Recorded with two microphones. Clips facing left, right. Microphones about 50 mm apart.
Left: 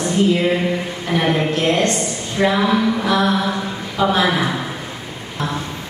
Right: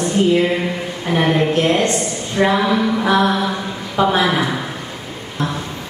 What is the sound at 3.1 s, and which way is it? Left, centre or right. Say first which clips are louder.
A woman's voice: right 3 dB; centre.